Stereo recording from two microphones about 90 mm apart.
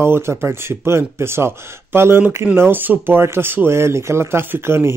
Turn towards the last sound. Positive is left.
turn(degrees=-25)  # may be behind; listen again after turning